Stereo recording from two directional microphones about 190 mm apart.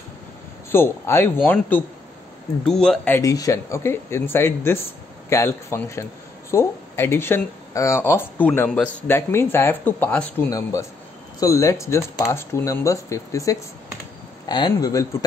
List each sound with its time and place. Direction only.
0.7 s speech: 15° left (ahead or behind)
3.2 s speech: 15° left (ahead or behind)